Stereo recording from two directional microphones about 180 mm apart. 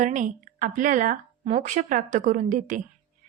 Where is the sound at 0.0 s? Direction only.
45° right (ahead or behind).